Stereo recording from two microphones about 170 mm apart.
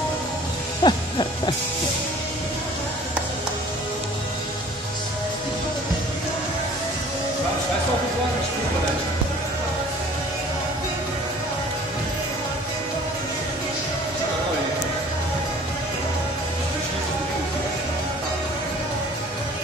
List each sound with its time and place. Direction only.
0.8 s owl: 25° left (ahead or behind)